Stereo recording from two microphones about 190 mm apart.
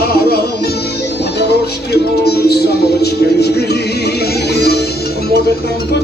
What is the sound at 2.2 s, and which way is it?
Music, 55° left (ahead or behind).